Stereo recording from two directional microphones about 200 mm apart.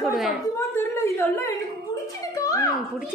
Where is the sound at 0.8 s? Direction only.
10° left (ahead or behind).